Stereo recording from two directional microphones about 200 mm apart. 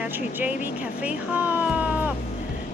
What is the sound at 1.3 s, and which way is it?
Speech, 5° right (ahead or behind).